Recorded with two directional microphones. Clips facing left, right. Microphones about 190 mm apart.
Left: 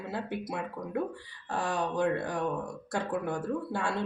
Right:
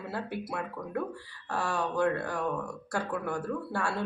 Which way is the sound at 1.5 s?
20° left (ahead or behind).